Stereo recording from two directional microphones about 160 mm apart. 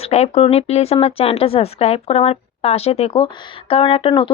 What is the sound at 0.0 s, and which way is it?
A woman's voice, 40° left (ahead or behind).